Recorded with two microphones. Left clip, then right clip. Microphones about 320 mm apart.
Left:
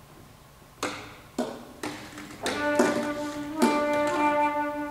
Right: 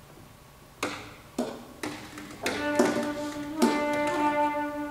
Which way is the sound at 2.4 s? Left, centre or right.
Centre.